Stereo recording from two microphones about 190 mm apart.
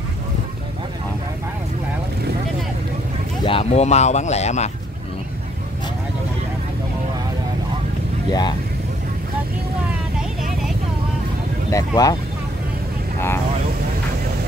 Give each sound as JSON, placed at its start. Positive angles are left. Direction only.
{"t": 3.4, "sound": "speech", "side_deg": 30}
{"t": 8.3, "sound": "speech", "side_deg": 20}
{"t": 11.7, "sound": "speech", "side_deg": 20}